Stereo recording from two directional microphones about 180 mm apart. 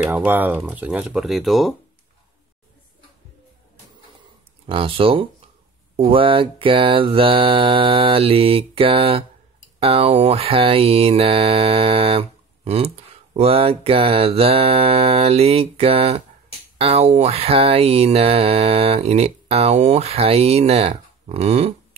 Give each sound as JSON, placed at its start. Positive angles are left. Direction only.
{"t": 0.1, "sound": "speech", "side_deg": -10}
{"t": 4.6, "sound": "mantra", "side_deg": -30}